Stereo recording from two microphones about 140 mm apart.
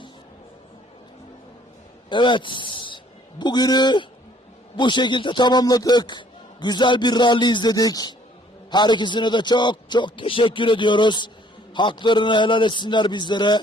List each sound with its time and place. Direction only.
2.0 s a man's voice: 35° left (ahead or behind)